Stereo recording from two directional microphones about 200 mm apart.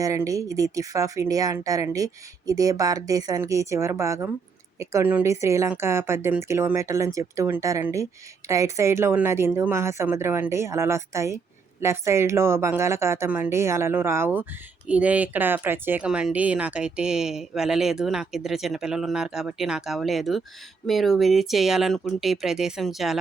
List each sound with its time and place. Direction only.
0.0 s a woman's voice: 15° right (ahead or behind)